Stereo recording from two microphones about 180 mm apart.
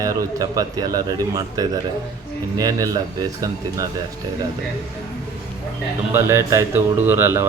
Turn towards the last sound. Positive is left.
turn(degrees=-15)  # may be behind; listen again after turning